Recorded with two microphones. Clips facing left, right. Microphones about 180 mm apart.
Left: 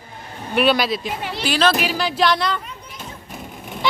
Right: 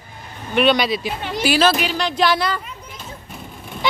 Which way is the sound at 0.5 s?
5° left (ahead or behind).